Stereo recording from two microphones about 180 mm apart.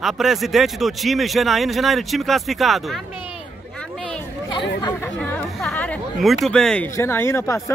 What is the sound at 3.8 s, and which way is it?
Hubbub, 5° left (ahead or behind).